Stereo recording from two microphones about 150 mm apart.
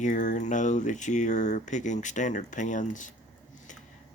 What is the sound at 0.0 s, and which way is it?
Speech, 55° left (ahead or behind).